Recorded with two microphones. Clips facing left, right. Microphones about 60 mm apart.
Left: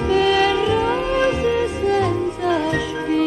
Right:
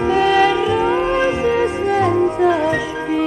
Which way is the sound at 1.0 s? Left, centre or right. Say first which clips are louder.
Right 2 dB; right.